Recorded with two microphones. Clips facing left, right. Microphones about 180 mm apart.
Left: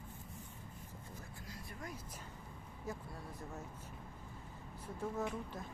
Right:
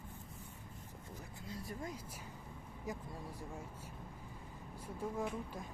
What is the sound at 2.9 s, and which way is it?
Speech, 10° right (ahead or behind).